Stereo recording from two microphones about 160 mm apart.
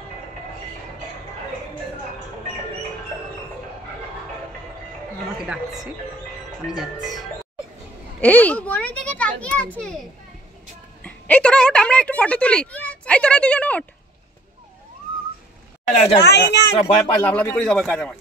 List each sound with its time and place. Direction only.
5.5 s speech: centre (ahead or behind)
8.2 s a woman's voice: 10° left (ahead or behind)
15.9 s speech: 45° left (ahead or behind)
16.2 s speech: 90° left
16.8 s speech: 10° left (ahead or behind)